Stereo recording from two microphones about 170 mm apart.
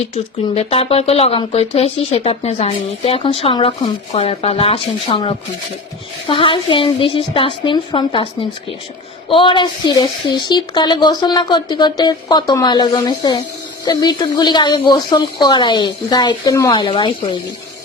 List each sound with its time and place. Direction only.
0.5 s speech: 35° left (ahead or behind)
9.3 s a woman's voice: 30° left (ahead or behind)